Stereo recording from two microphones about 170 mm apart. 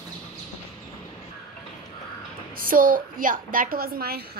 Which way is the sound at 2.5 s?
55° right (ahead or behind).